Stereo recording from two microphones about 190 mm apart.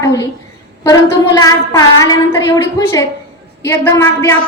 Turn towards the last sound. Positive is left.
turn(degrees=15)  # may be behind; listen again after turning